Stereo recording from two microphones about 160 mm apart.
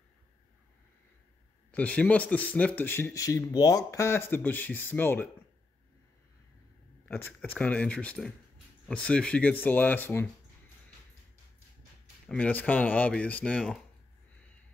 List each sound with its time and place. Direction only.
1.7 s speech: 10° left (ahead or behind)
7.1 s speech: 15° left (ahead or behind)
12.3 s speech: 10° left (ahead or behind)